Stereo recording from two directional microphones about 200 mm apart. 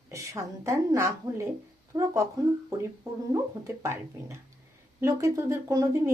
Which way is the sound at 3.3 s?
15° right (ahead or behind).